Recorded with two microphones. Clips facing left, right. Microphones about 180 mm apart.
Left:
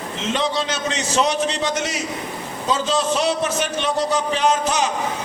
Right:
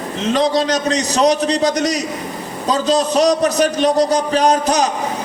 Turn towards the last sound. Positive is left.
turn(degrees=-40)  # may be behind; listen again after turning